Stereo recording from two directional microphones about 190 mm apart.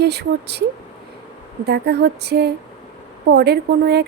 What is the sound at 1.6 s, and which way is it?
A woman's voice, 60° right (ahead or behind).